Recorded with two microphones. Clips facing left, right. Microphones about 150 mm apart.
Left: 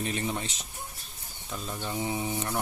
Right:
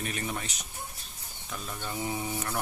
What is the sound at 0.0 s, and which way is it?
Speech, 25° left (ahead or behind).